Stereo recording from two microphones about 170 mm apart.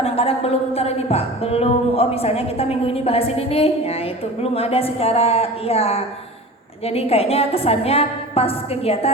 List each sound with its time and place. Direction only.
0.0 s speech: 35° left (ahead or behind)